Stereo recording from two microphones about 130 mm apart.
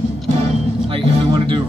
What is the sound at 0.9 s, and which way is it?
Music, 45° right (ahead or behind).